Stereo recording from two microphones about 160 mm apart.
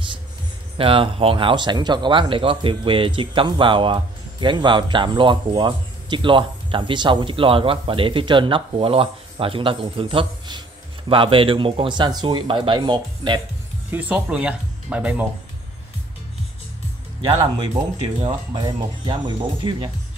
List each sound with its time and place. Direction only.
0.7 s speech: 35° right (ahead or behind)
13.8 s speech: 10° right (ahead or behind)
18.2 s speech: 30° right (ahead or behind)